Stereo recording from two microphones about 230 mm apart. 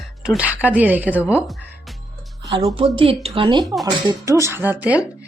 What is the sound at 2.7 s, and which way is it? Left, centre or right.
Speech, right.